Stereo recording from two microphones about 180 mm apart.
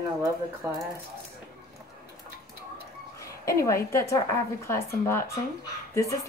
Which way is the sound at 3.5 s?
15° left (ahead or behind).